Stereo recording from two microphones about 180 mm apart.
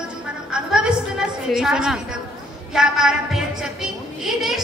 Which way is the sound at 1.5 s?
5° right (ahead or behind).